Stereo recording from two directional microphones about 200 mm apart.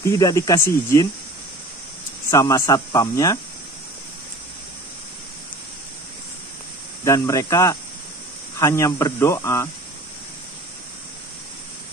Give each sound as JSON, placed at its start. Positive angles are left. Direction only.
{"t": 0.0, "sound": "speech", "side_deg": 15}
{"t": 2.3, "sound": "speech", "side_deg": 15}
{"t": 7.1, "sound": "speech", "side_deg": 15}